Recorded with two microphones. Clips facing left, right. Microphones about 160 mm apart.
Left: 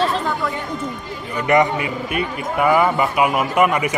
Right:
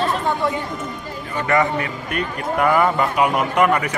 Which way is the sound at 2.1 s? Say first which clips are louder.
Even; 5° left (ahead or behind).